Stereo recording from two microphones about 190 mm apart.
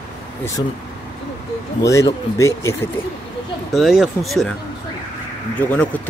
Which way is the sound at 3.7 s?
Centre (ahead or behind).